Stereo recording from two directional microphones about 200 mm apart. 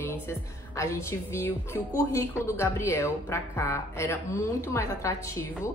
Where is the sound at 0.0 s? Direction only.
10° left (ahead or behind).